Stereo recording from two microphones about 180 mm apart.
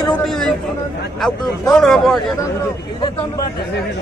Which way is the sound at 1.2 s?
5° left (ahead or behind).